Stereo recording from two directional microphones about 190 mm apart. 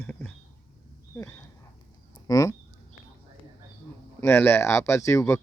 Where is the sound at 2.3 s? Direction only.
15° left (ahead or behind).